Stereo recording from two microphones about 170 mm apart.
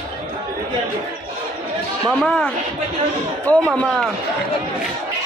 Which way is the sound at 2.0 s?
5° left (ahead or behind).